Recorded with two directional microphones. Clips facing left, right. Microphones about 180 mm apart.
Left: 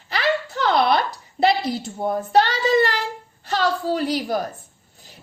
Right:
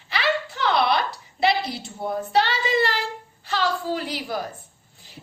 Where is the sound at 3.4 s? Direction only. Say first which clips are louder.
Left 3 dB; 40° left (ahead or behind).